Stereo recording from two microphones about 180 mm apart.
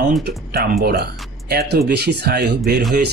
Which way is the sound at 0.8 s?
60° right (ahead or behind).